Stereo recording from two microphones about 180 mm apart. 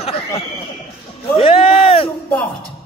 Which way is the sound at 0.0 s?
35° left (ahead or behind).